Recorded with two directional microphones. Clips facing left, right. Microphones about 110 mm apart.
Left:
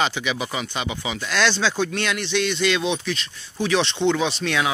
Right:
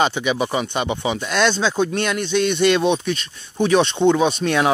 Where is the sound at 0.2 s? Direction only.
35° right (ahead or behind).